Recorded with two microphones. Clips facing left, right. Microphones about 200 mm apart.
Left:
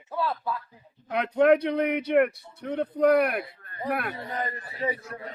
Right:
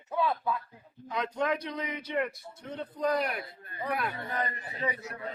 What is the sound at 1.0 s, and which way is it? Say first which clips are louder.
Speech: left 10 dB; 60° left (ahead or behind).